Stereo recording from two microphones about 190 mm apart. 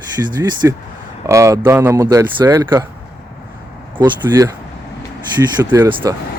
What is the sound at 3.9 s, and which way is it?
Speech, 20° right (ahead or behind).